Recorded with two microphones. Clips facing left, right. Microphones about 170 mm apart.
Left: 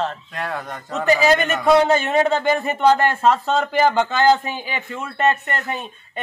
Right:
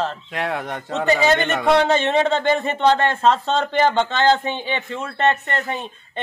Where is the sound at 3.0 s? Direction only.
25° right (ahead or behind).